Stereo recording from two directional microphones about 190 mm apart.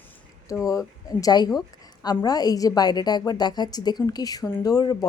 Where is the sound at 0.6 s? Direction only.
20° left (ahead or behind).